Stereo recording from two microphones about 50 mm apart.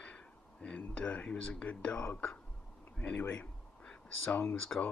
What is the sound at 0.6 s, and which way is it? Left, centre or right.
Speech, left.